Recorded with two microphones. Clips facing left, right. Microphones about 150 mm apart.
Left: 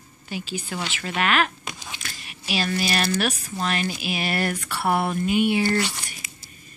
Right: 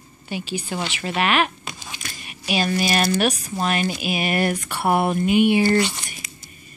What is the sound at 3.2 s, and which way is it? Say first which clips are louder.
Speech: right 4 dB; 40° right (ahead or behind).